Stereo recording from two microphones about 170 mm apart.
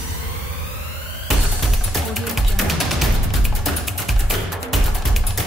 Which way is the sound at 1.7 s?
Centre (ahead or behind).